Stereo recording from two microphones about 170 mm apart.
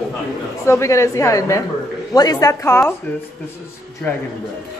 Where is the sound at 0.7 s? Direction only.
15° left (ahead or behind).